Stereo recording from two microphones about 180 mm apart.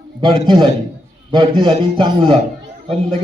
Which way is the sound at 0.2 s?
30° right (ahead or behind).